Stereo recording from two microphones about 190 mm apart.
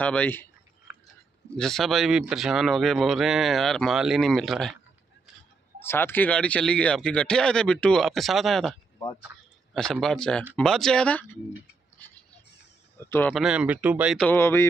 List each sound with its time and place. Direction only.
0.0 s speech: 5° left (ahead or behind)
1.6 s a man's voice: centre (ahead or behind)
5.8 s a man's voice: 10° left (ahead or behind)
9.8 s a man's voice: 5° left (ahead or behind)
13.3 s a man's voice: 5° right (ahead or behind)
14.2 s speech: 10° left (ahead or behind)